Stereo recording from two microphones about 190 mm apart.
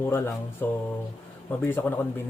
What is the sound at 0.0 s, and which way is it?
Speech, 15° left (ahead or behind).